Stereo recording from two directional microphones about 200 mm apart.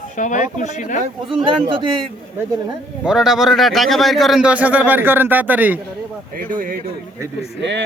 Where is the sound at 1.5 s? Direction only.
25° right (ahead or behind).